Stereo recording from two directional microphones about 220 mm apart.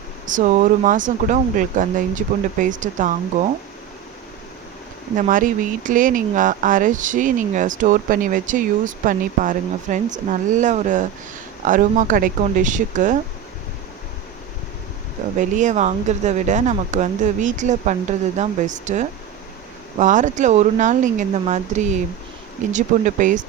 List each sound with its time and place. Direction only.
0.3 s speech: 35° right (ahead or behind)
5.1 s speech: 35° right (ahead or behind)
15.4 s speech: 35° right (ahead or behind)